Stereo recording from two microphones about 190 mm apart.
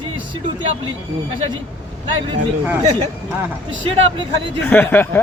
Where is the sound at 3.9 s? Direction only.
25° right (ahead or behind).